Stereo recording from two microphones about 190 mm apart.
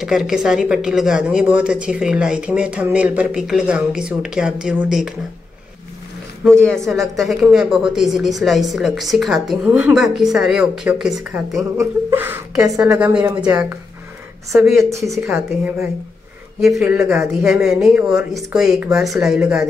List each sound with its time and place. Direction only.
0.0 s a woman's voice: centre (ahead or behind)
6.6 s a woman's voice: centre (ahead or behind); by 12.8 s 15° right (ahead or behind)
13.0 s a woman's voice: 5° right (ahead or behind)
14.8 s a woman's voice: 15° right (ahead or behind)